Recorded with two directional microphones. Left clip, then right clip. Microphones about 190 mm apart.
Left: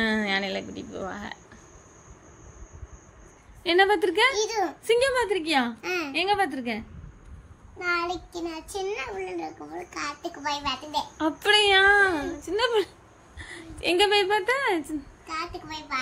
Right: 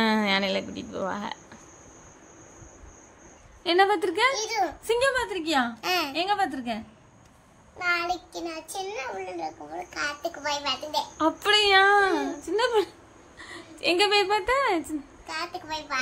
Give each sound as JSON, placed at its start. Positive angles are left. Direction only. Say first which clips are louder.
{"t": 0.0, "sound": "speech", "louder": "right 2 dB", "side_deg": -10}
{"t": 3.6, "sound": "a woman's voice", "louder": "left 1 dB", "side_deg": 5}
{"t": 5.8, "sound": "a woman's voice", "louder": "right 3 dB", "side_deg": -70}
{"t": 6.1, "sound": "a woman's voice", "louder": "left 1 dB", "side_deg": 5}
{"t": 7.8, "sound": "a child's voice", "louder": "right 1 dB", "side_deg": -25}
{"t": 11.1, "sound": "a woman's voice", "louder": "left 1 dB", "side_deg": 0}